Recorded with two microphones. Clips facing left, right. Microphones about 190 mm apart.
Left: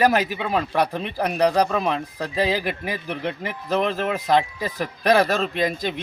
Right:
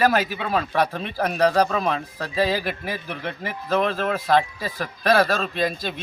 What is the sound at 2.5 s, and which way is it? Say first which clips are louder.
Speech: left 1 dB; 5° right (ahead or behind).